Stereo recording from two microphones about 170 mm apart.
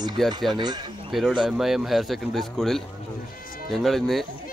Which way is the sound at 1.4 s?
Centre (ahead or behind).